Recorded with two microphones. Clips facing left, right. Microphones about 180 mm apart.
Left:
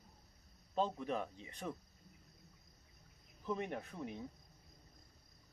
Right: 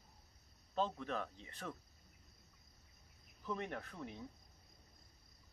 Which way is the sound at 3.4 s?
20° left (ahead or behind).